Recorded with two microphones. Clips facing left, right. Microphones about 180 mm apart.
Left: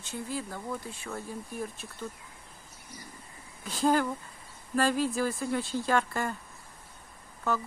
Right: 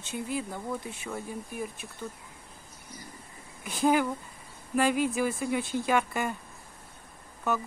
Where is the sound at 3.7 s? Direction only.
15° right (ahead or behind).